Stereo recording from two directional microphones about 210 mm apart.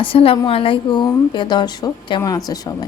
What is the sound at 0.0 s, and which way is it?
A woman's voice, 25° left (ahead or behind).